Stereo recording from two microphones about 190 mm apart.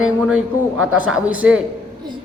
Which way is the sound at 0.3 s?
5° right (ahead or behind).